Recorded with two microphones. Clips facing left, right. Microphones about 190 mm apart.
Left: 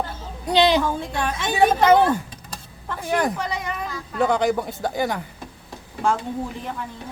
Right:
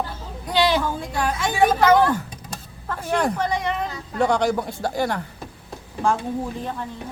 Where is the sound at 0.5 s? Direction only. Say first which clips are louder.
Left 2 dB; 20° left (ahead or behind).